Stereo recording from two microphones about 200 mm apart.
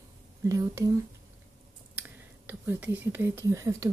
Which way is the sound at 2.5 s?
10° right (ahead or behind).